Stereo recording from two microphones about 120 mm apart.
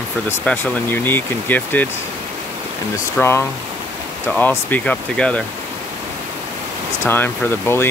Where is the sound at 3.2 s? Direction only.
10° left (ahead or behind).